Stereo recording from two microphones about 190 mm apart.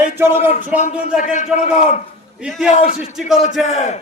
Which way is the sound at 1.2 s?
40° left (ahead or behind).